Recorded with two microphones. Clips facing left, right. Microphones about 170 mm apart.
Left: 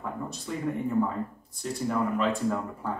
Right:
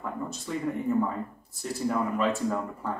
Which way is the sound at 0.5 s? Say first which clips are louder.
Right 1 dB; centre (ahead or behind).